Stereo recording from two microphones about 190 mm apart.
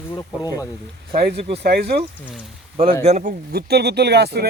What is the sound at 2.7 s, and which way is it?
Speech, 30° right (ahead or behind).